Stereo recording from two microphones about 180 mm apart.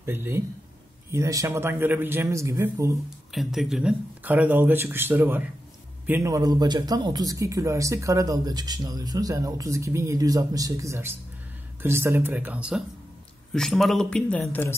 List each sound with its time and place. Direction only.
0.0 s speech: 15° right (ahead or behind)
3.3 s speech: centre (ahead or behind)